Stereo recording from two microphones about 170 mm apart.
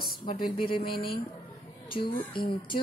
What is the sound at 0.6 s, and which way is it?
Speech, 30° left (ahead or behind).